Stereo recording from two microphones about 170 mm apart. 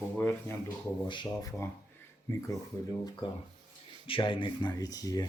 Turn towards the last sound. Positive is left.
turn(degrees=20)  # may be behind; listen again after turning